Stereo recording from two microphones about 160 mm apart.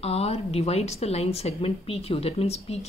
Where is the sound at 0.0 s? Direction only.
40° left (ahead or behind).